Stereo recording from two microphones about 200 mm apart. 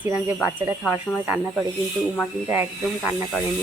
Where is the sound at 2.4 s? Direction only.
10° right (ahead or behind).